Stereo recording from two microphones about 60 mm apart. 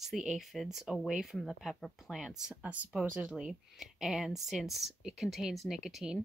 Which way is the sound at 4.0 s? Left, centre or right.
Centre.